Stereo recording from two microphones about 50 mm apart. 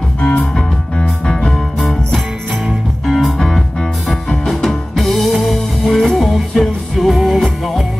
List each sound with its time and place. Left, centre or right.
0.2 s music: left
1.8 s music: centre